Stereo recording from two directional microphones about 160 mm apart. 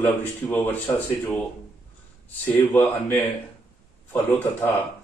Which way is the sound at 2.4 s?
10° left (ahead or behind).